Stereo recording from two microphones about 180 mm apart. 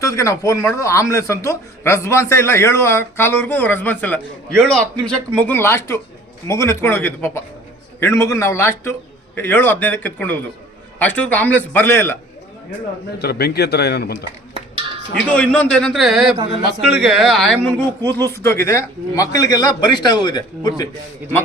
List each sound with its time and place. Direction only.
0.0 s speech: 15° left (ahead or behind)
13.1 s speech: 60° left (ahead or behind)
14.3 s dishes: 30° right (ahead or behind)
15.7 s speech: 5° left (ahead or behind); by 20.8 s 20° left (ahead or behind)